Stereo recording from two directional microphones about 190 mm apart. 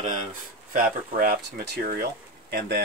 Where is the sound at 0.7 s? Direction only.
45° right (ahead or behind).